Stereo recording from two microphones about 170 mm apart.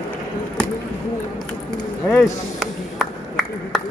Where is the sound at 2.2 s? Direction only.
Centre (ahead or behind).